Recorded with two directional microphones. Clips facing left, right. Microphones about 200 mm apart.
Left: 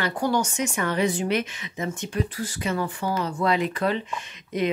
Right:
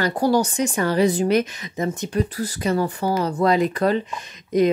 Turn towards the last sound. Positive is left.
turn(degrees=-40)  # may be behind; listen again after turning